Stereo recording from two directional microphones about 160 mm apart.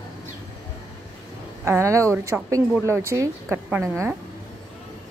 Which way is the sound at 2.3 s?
5° right (ahead or behind).